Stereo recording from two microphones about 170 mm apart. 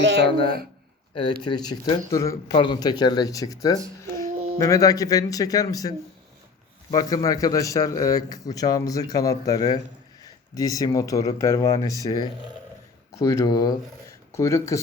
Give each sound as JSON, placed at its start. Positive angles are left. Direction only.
{"t": 0.0, "sound": "a woman's voice", "side_deg": -90}
{"t": 0.3, "sound": "a woman's voice", "side_deg": 30}
{"t": 6.9, "sound": "a man's voice", "side_deg": 20}